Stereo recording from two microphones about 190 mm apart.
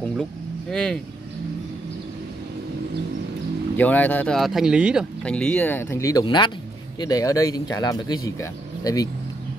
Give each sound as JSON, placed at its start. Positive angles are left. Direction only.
{"t": 0.0, "sound": "speech", "side_deg": 5}
{"t": 3.7, "sound": "speech", "side_deg": 10}